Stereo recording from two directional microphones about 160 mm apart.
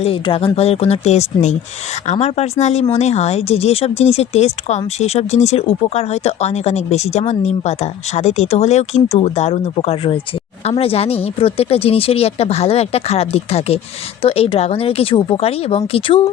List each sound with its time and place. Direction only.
0.0 s speech: 35° left (ahead or behind)